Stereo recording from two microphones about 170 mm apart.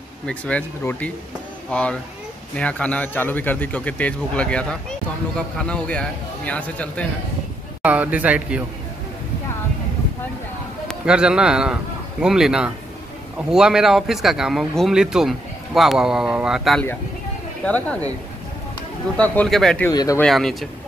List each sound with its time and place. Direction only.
0.3 s a man's voice: 10° left (ahead or behind)
7.8 s a man's voice: 10° right (ahead or behind)
10.9 s a man's voice: 5° right (ahead or behind)
17.6 s a man's voice: 10° left (ahead or behind)
19.1 s speech: 10° left (ahead or behind)
19.9 s speech: 20° left (ahead or behind)
20.2 s speech: centre (ahead or behind)